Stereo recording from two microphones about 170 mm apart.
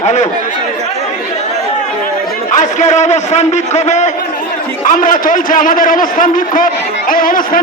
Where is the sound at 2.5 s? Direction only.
45° left (ahead or behind).